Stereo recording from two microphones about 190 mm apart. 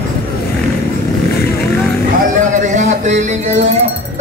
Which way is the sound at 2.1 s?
40° right (ahead or behind).